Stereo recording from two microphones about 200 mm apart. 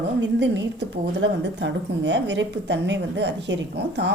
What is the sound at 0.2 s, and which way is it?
A woman's voice, 60° right (ahead or behind).